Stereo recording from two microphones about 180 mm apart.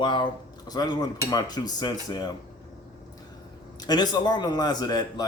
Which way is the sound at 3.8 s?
20° left (ahead or behind).